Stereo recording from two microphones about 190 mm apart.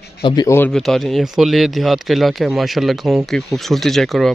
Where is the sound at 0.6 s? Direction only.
Centre (ahead or behind).